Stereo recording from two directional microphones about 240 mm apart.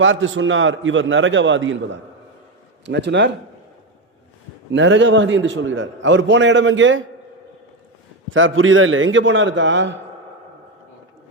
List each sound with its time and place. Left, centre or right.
0.0 s a man's voice: right
4.7 s a man's voice: right
8.3 s a man's voice: right